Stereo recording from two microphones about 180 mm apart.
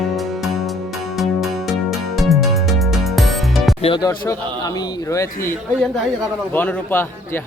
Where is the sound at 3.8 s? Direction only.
25° left (ahead or behind).